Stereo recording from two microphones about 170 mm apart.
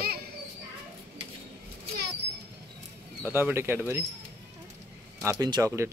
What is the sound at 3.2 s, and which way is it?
Speech, 10° right (ahead or behind).